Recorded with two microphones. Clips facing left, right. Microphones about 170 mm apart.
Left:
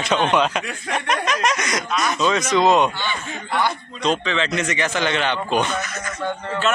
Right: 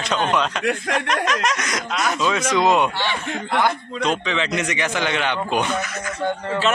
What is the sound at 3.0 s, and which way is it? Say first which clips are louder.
Speech: right 3 dB; 75° right (ahead or behind).